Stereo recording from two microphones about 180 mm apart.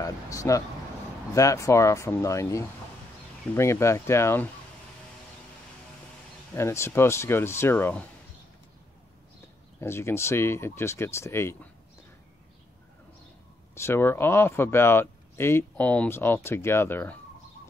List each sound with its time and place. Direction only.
0.0 s speech: 20° left (ahead or behind)
6.5 s speech: 15° left (ahead or behind)
9.8 s speech: 15° left (ahead or behind)
13.7 s speech: 15° left (ahead or behind)